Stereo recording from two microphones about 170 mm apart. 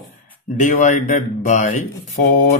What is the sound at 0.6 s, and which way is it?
Mantra, 50° left (ahead or behind).